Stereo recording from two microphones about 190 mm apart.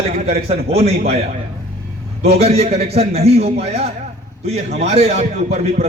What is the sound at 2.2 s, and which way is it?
A man's voice, 35° right (ahead or behind).